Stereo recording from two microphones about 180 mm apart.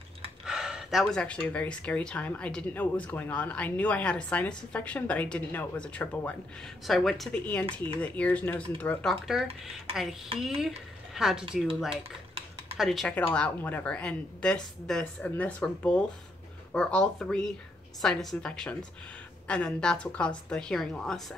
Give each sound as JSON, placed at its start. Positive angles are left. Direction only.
{"t": 0.5, "sound": "a woman's voice", "side_deg": -5}
{"t": 11.9, "sound": "typing", "side_deg": -30}
{"t": 12.7, "sound": "a woman's voice", "side_deg": 0}